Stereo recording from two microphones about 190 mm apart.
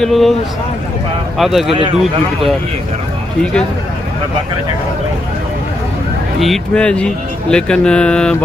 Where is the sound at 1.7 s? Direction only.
25° right (ahead or behind).